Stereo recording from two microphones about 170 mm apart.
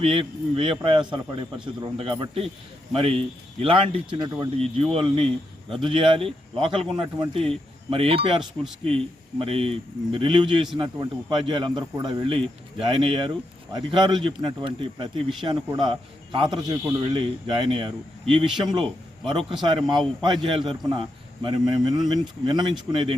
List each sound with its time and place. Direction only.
0.0 s a man's voice: 30° right (ahead or behind)